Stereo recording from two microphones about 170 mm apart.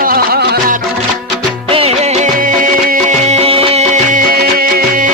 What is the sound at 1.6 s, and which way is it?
Music, 35° right (ahead or behind).